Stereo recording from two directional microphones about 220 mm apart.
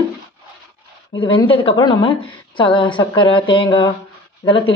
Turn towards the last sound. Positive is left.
turn(degrees=25)  # may be behind; listen again after turning